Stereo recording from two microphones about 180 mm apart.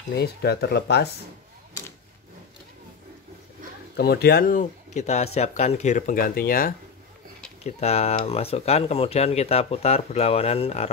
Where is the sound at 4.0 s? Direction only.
60° left (ahead or behind).